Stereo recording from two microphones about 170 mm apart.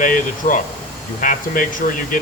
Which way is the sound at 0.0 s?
50° left (ahead or behind).